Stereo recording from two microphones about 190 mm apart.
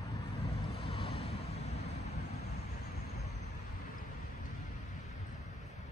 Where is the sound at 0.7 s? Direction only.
30° left (ahead or behind).